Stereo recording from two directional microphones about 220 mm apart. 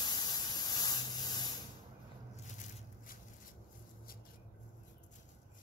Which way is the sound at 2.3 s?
30° left (ahead or behind).